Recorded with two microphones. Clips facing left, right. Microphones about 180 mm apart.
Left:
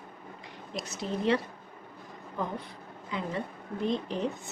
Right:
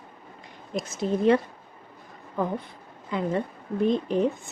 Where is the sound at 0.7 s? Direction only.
50° right (ahead or behind).